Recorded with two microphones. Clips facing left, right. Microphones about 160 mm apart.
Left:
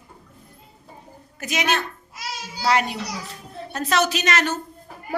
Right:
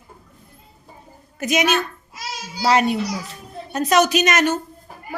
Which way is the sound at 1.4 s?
20° right (ahead or behind).